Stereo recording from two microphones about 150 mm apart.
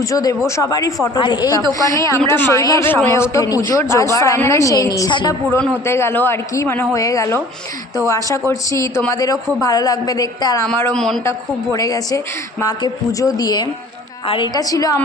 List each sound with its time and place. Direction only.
0.0 s a woman's voice: 25° left (ahead or behind)
10.9 s speech: 5° left (ahead or behind)
11.2 s a woman's voice: 20° left (ahead or behind)